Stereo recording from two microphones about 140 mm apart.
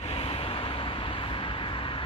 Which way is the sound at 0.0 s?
45° left (ahead or behind).